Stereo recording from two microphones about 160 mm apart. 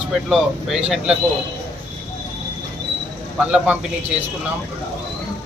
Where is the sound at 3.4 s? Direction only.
5° right (ahead or behind).